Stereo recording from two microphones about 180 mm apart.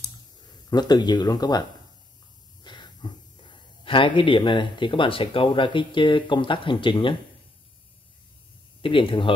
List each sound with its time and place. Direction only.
0.7 s speech: 20° left (ahead or behind)
8.8 s speech: 30° left (ahead or behind)